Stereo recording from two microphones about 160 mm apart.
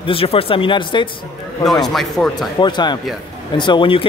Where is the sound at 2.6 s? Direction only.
25° left (ahead or behind).